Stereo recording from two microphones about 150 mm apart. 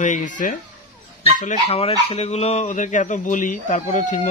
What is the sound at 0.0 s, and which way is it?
Speech, 55° left (ahead or behind).